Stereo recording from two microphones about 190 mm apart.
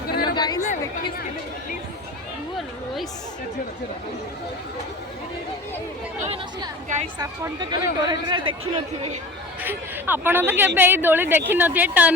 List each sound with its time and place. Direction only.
0.1 s chatter: 55° left (ahead or behind)
0.3 s chatter: 20° left (ahead or behind)
7.2 s speech: 20° right (ahead or behind)
9.6 s a woman's voice: 10° right (ahead or behind)